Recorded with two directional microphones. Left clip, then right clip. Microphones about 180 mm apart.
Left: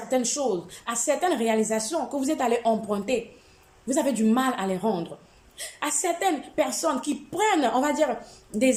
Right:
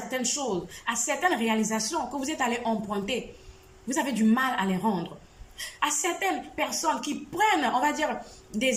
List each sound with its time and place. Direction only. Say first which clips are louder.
0.1 s a woman's voice: left 5 dB; 20° left (ahead or behind)